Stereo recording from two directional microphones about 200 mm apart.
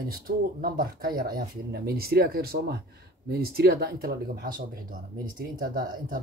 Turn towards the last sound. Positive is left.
turn(degrees=-45)  # may be behind; listen again after turning